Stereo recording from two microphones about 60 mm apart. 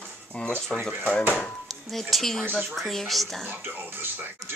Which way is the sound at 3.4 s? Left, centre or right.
Right.